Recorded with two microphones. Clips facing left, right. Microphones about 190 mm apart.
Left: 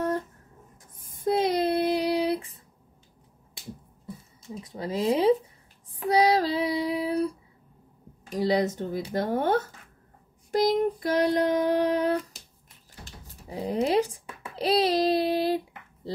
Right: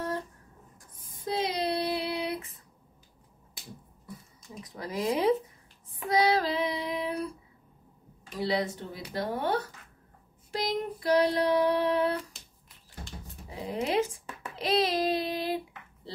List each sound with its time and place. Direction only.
0.9 s child singing: 50° left (ahead or behind); by 2.4 s 35° left (ahead or behind)
4.0 s a sound: 25° left (ahead or behind)
5.9 s child singing: 35° left (ahead or behind)
8.3 s speech: 40° left (ahead or behind)
10.5 s child singing: 45° left (ahead or behind)
13.5 s speech: 35° left (ahead or behind)
14.5 s a sound: 35° left (ahead or behind)